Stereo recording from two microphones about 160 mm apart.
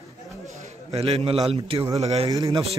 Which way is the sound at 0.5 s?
40° right (ahead or behind).